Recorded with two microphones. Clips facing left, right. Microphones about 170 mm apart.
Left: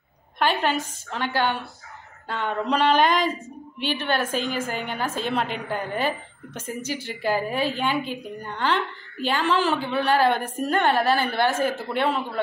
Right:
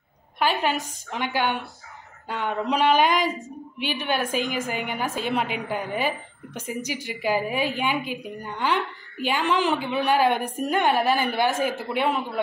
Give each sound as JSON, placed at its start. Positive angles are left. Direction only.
{"t": 0.4, "sound": "a woman's voice", "side_deg": -10}